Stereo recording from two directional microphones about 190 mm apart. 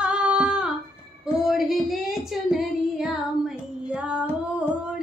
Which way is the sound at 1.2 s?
Centre (ahead or behind).